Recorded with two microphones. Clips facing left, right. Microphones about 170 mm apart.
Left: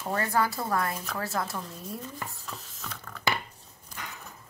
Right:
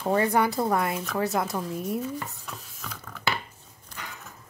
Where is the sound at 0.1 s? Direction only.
20° right (ahead or behind).